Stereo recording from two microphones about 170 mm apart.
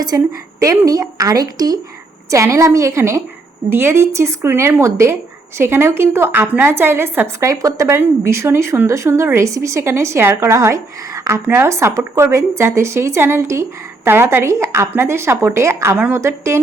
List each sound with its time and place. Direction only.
0.1 s a woman's voice: 20° right (ahead or behind)